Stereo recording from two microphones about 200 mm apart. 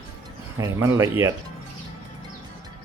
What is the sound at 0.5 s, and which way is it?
Speech, 15° right (ahead or behind).